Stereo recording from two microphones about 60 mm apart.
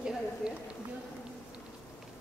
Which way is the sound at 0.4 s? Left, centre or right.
Centre.